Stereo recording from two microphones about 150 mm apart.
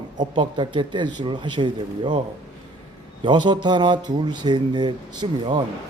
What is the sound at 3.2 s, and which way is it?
Speech, 30° right (ahead or behind).